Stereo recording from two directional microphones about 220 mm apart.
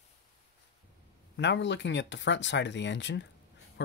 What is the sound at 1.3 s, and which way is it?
Speech, 55° left (ahead or behind).